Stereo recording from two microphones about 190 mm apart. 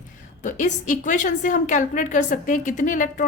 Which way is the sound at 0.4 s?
40° left (ahead or behind).